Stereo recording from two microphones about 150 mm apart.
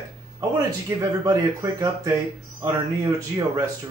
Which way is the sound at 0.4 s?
20° right (ahead or behind).